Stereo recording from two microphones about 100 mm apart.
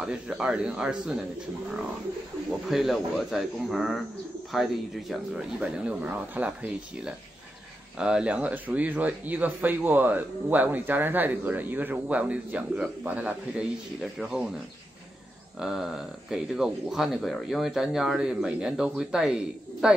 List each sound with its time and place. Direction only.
0.0 s speech: 10° right (ahead or behind)
2.7 s speech: centre (ahead or behind)
5.9 s speech: 15° right (ahead or behind)
15.6 s speech: 5° right (ahead or behind)